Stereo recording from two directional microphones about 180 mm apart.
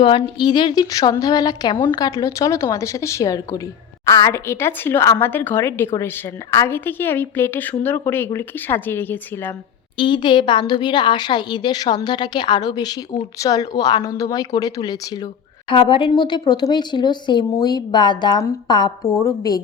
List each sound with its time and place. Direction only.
0.0 s a woman's voice: 25° left (ahead or behind); by 9.6 s 10° left (ahead or behind)
10.0 s a woman's voice: 25° left (ahead or behind)